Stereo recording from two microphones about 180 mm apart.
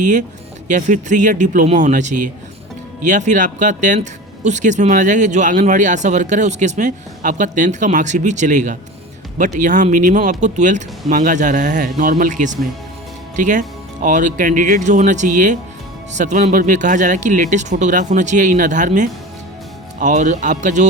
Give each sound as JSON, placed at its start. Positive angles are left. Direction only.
{"t": 0.0, "sound": "speech", "side_deg": -45}